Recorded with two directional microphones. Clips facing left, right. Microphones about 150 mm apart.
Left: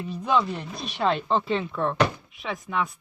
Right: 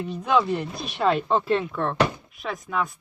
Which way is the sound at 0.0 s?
Centre (ahead or behind).